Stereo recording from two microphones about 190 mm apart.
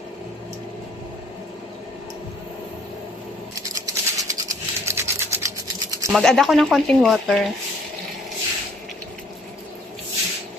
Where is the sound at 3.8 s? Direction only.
15° right (ahead or behind).